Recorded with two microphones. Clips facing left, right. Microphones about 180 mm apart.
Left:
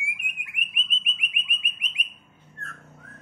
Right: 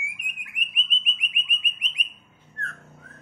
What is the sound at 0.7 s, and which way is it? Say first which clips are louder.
Bird: right 2 dB; 5° left (ahead or behind).